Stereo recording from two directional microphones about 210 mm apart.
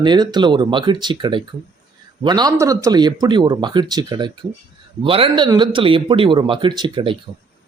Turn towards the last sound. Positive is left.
turn(degrees=-20)  # may be behind; listen again after turning